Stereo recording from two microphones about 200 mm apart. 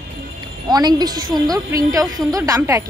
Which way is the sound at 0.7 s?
20° right (ahead or behind).